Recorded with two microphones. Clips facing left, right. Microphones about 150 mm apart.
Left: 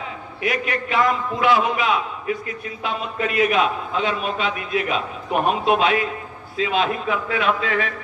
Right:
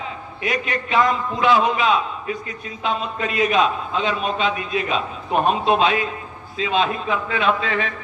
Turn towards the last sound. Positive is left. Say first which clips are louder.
# right 1 dB
turn(degrees=-25)  # may be behind; listen again after turning